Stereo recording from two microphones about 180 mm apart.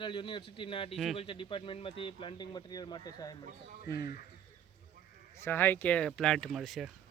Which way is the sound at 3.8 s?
20° right (ahead or behind).